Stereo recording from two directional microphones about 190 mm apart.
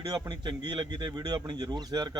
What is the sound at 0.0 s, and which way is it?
Speech, 20° right (ahead or behind).